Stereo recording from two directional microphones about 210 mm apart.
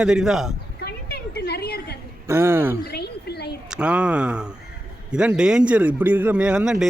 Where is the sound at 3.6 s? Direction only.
5° right (ahead or behind).